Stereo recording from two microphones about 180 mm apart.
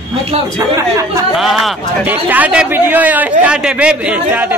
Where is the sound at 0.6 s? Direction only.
15° right (ahead or behind).